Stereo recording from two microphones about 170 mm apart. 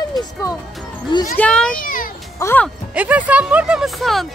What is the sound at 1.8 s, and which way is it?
Speech, 55° left (ahead or behind).